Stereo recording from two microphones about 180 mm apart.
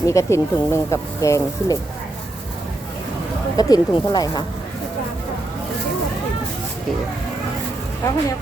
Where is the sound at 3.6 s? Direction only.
20° left (ahead or behind).